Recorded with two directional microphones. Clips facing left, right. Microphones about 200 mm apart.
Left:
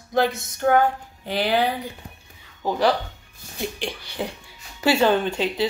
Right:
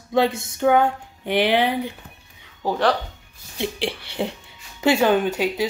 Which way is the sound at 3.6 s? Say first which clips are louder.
Right 3 dB; 30° right (ahead or behind).